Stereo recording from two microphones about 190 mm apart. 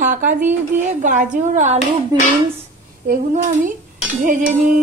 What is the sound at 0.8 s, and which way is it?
Dishes, 40° right (ahead or behind).